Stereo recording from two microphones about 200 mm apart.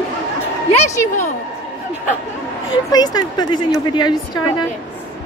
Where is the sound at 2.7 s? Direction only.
20° left (ahead or behind).